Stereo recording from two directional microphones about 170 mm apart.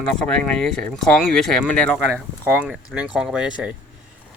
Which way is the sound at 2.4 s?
10° right (ahead or behind).